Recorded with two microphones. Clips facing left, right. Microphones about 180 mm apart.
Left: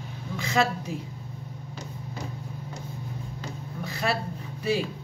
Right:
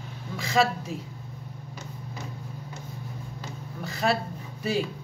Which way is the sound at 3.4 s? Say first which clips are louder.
Left 1 dB; centre (ahead or behind).